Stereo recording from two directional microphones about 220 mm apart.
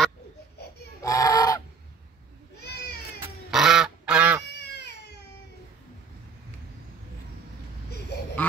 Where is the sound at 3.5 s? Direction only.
Centre (ahead or behind).